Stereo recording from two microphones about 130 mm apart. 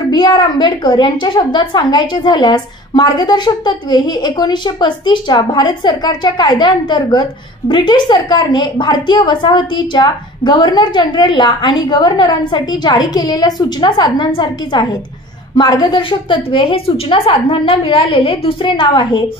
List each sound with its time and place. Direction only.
0.1 s a woman's voice: 35° left (ahead or behind)